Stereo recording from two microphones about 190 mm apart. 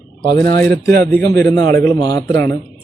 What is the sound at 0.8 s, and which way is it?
Speech, 55° right (ahead or behind).